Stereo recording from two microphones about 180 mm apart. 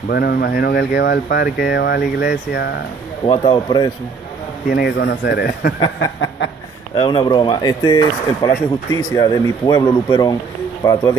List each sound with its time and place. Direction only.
0.1 s speech: 60° left (ahead or behind)
3.3 s speech: 25° left (ahead or behind)
4.6 s speech: 60° left (ahead or behind)
7.0 s speech: 25° left (ahead or behind)